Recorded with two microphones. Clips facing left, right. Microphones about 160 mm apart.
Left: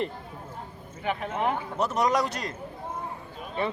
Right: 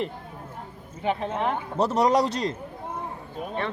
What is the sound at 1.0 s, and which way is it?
A man's voice, 30° right (ahead or behind).